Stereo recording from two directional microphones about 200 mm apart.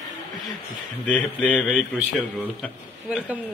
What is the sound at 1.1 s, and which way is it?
A man's voice, 5° left (ahead or behind).